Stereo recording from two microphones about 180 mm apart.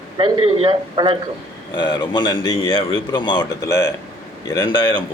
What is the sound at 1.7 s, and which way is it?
A man's voice, 25° left (ahead or behind).